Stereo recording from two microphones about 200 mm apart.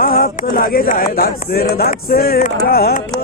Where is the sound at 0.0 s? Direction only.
45° left (ahead or behind).